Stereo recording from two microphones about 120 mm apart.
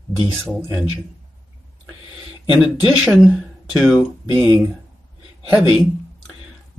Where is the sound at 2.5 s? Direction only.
10° right (ahead or behind).